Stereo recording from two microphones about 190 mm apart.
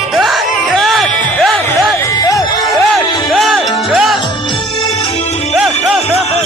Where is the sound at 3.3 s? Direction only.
Centre (ahead or behind).